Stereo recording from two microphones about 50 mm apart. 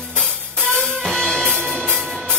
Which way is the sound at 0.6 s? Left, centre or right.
Centre.